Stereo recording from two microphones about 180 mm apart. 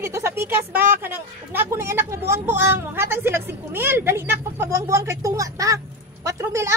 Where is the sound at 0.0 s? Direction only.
15° right (ahead or behind).